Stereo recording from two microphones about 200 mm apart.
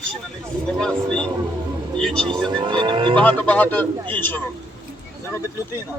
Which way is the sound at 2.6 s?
25° right (ahead or behind).